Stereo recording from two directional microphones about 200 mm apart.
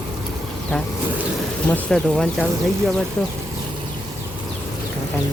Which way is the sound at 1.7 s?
5° left (ahead or behind).